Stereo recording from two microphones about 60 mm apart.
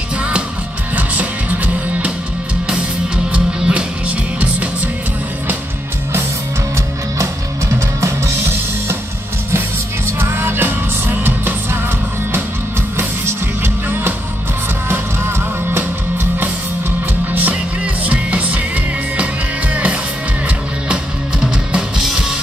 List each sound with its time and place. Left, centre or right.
0.9 s music: right
3.3 s music: centre
10.1 s music: right
12.9 s music: right
17.3 s music: right
19.7 s music: right